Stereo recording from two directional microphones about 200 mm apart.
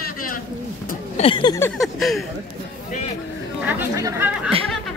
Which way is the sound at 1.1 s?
25° left (ahead or behind).